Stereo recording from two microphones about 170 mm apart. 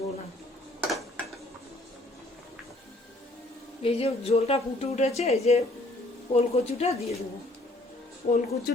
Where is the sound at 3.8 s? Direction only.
35° left (ahead or behind).